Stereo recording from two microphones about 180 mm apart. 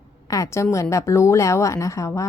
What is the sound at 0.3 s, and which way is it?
A woman's voice, 20° left (ahead or behind).